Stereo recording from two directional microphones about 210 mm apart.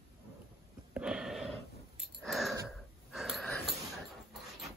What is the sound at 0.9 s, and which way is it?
Sniff, 5° right (ahead or behind).